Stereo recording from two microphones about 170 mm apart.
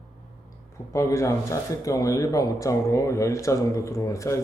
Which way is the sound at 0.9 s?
15° left (ahead or behind).